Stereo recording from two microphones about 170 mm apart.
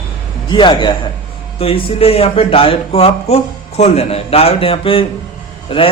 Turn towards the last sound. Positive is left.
turn(degrees=30)  # may be behind; listen again after turning